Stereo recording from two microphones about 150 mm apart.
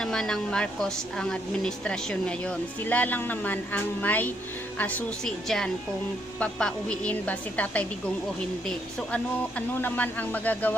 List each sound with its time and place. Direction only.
0.0 s a woman's voice: 5° left (ahead or behind)